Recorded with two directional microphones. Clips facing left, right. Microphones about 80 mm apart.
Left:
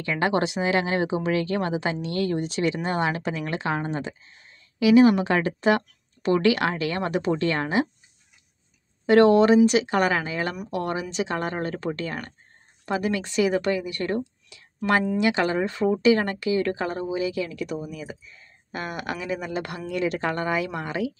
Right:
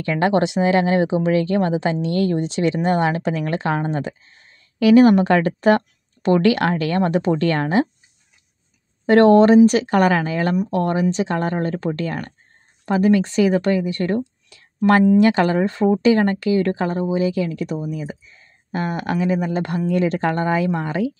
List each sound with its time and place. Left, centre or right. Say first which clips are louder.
0.0 s speech: right 5 dB; right
4.8 s a woman's voice: right 5 dB; right
9.0 s a woman's voice: right 4 dB; right
15.1 s speech: right 7 dB; right